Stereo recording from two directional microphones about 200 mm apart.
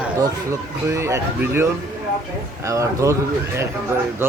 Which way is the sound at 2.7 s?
15° right (ahead or behind).